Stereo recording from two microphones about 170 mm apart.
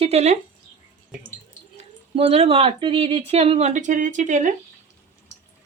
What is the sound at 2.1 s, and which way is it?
Speech, 35° right (ahead or behind).